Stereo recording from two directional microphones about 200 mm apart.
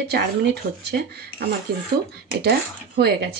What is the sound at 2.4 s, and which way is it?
Speech, 55° right (ahead or behind).